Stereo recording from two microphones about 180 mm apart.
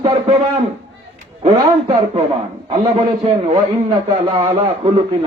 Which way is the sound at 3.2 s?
35° right (ahead or behind).